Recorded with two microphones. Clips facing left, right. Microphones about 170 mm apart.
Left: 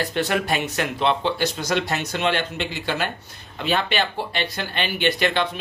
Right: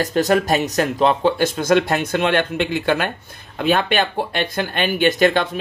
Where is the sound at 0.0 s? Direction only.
40° right (ahead or behind).